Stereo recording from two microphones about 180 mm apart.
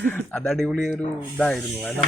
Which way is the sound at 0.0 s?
5° left (ahead or behind).